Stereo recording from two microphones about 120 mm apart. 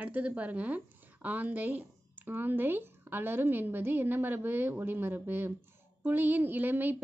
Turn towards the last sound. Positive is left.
turn(degrees=-15)  # may be behind; listen again after turning